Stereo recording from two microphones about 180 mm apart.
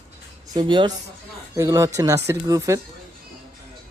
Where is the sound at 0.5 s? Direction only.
25° right (ahead or behind).